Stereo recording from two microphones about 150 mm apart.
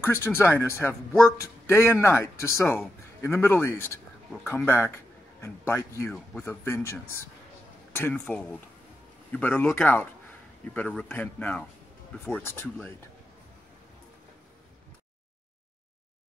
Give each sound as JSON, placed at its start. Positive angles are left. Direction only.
{"t": 0.0, "sound": "a man's voice", "side_deg": 15}